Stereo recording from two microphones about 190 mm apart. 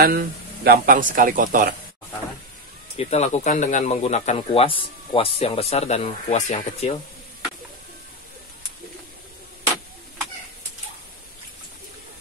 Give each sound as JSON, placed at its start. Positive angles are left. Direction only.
{"t": 0.0, "sound": "speech", "side_deg": -50}
{"t": 3.0, "sound": "speech", "side_deg": 35}